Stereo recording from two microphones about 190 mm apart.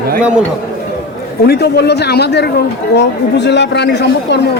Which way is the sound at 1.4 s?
60° left (ahead or behind).